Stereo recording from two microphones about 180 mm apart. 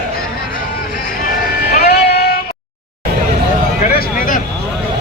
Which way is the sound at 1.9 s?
65° left (ahead or behind).